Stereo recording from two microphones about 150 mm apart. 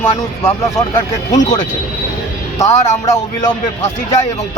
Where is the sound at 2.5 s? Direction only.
20° left (ahead or behind).